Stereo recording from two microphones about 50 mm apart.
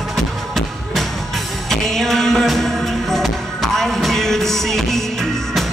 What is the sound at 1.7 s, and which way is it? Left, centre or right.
Music, centre.